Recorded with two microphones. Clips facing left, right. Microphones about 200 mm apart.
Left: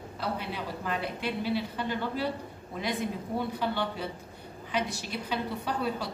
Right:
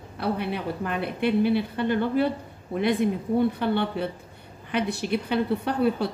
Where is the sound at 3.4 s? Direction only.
60° right (ahead or behind).